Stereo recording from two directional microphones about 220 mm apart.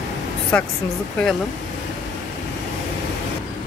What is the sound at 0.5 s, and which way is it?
Speech, 10° left (ahead or behind).